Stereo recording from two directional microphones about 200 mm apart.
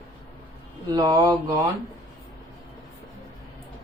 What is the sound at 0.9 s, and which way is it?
Speech, 20° right (ahead or behind).